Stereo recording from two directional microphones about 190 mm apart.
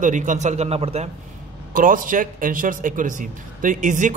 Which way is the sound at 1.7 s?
45° right (ahead or behind).